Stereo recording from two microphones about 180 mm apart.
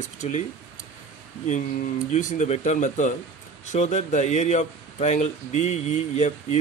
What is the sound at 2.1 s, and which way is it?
Speech, 40° left (ahead or behind).